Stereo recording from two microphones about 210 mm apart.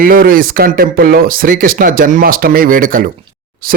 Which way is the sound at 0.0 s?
45° right (ahead or behind).